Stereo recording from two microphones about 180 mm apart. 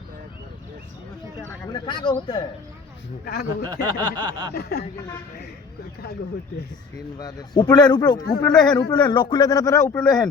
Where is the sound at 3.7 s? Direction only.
25° right (ahead or behind).